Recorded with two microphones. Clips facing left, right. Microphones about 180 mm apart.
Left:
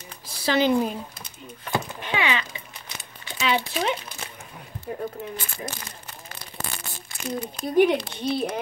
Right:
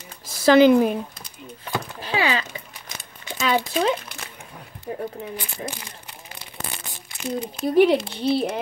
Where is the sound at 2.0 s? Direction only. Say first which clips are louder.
Right 6 dB; 35° right (ahead or behind).